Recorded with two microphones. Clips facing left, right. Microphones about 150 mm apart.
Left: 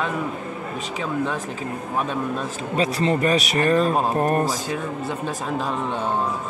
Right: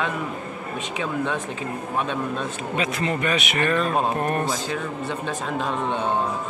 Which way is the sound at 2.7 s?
35° left (ahead or behind).